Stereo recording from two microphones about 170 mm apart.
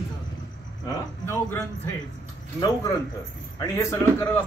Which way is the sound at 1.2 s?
15° left (ahead or behind).